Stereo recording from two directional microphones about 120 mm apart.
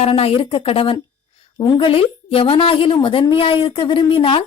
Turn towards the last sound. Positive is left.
turn(degrees=45)  # may be behind; listen again after turning